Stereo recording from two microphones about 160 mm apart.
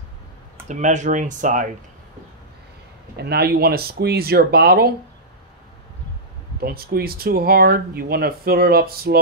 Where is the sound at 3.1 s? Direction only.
90° right.